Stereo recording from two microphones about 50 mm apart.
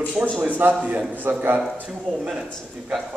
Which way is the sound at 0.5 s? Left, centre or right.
Right.